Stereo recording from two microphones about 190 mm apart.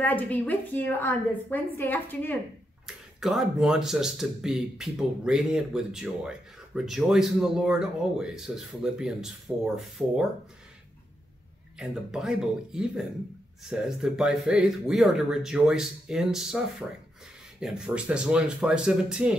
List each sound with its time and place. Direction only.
0.0 s a woman's voice: 10° left (ahead or behind)
2.9 s speech: centre (ahead or behind)
11.8 s speech: 5° right (ahead or behind)